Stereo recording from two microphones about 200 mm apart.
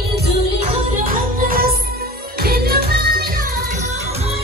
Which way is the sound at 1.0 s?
45° right (ahead or behind).